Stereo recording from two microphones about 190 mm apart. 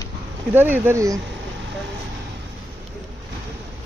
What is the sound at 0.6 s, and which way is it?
Speech, 10° right (ahead or behind).